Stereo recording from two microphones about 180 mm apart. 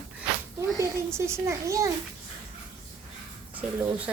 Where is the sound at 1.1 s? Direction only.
15° right (ahead or behind).